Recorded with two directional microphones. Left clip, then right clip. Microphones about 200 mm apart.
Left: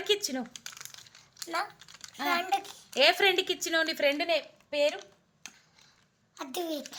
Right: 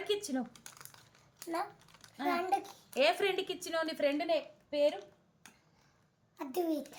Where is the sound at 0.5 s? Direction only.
10° right (ahead or behind).